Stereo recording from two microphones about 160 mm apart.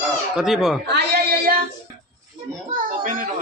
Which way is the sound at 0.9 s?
85° right.